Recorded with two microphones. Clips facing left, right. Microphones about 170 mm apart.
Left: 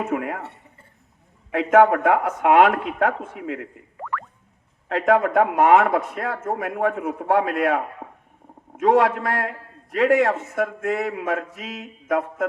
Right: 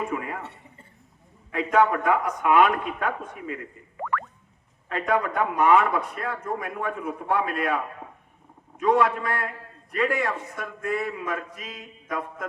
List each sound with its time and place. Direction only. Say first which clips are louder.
0.1 s a man's voice: left 5 dB; 65° left (ahead or behind)
4.9 s a man's voice: left 6 dB; 75° left (ahead or behind)
8.8 s a man's voice: left 4 dB; 70° left (ahead or behind)